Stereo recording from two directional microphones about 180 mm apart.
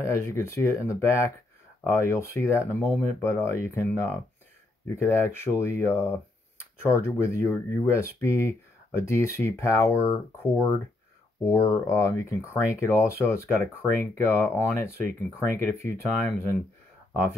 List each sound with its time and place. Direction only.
0.0 s speech: 15° left (ahead or behind)
11.4 s speech: 15° left (ahead or behind)